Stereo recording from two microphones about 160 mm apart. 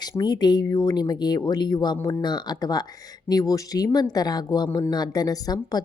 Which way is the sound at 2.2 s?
25° left (ahead or behind).